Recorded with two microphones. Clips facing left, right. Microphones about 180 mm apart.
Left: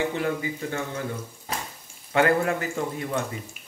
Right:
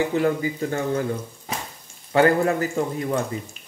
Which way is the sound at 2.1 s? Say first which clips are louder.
Right 4 dB; 35° right (ahead or behind).